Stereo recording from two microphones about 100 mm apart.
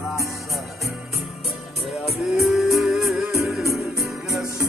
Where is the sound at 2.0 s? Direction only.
Centre (ahead or behind).